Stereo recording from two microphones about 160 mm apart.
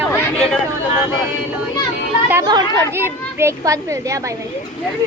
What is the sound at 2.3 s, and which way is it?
A child's voice, 25° right (ahead or behind).